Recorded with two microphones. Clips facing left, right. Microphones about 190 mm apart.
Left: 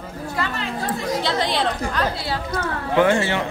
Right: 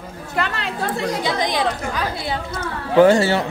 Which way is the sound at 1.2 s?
15° right (ahead or behind).